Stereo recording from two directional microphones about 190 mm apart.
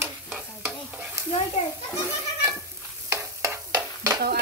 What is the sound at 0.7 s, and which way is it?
Stir, 10° right (ahead or behind).